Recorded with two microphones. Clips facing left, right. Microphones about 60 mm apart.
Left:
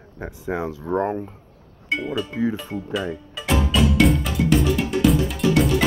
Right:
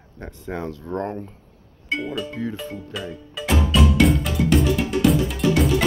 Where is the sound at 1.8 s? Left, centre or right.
Centre.